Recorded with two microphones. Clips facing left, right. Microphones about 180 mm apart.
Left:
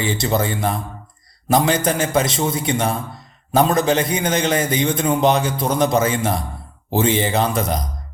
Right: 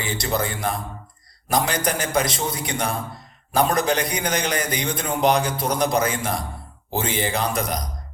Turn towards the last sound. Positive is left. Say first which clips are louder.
# left 5 dB
turn(degrees=25)  # may be behind; listen again after turning